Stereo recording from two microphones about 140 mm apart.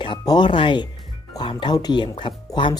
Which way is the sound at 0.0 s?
35° left (ahead or behind).